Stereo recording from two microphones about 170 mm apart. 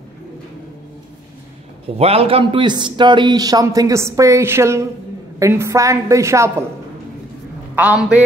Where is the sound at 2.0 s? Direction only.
35° right (ahead or behind); by 6.6 s 15° right (ahead or behind).